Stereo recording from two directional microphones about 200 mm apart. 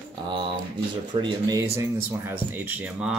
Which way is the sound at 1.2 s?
15° right (ahead or behind).